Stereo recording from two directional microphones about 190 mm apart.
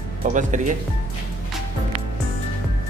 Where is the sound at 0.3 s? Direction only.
40° right (ahead or behind).